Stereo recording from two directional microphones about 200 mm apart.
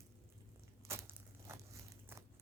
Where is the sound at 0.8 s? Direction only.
10° right (ahead or behind).